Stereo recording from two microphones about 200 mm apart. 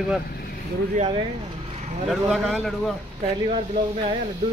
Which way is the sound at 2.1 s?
Centre (ahead or behind).